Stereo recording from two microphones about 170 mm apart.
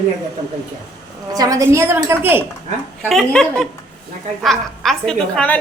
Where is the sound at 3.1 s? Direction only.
5° left (ahead or behind).